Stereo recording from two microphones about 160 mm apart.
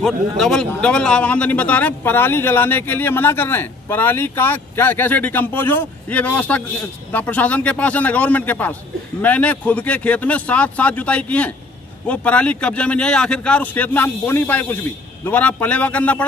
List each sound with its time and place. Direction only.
0.0 s a man's voice: 5° left (ahead or behind)